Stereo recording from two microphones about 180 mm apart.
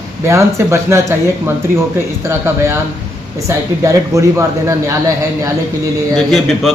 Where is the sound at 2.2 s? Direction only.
15° right (ahead or behind).